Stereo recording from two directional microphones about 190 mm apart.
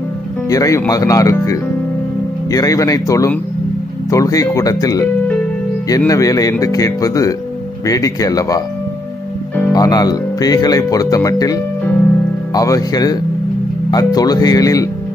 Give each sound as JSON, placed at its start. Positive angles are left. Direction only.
{"t": 0.5, "sound": "speech", "side_deg": 15}
{"t": 9.7, "sound": "speech", "side_deg": 20}